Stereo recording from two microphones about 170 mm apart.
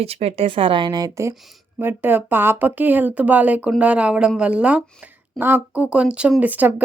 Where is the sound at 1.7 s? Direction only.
10° right (ahead or behind).